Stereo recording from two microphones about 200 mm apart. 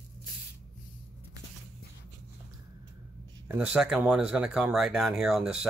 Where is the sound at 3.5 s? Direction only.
5° right (ahead or behind).